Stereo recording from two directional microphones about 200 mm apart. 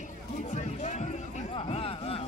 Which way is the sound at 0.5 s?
35° left (ahead or behind).